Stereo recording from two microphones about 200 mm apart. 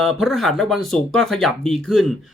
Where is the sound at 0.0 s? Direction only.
Centre (ahead or behind).